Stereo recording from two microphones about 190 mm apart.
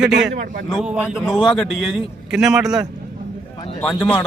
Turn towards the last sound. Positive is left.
turn(degrees=10)  # may be behind; listen again after turning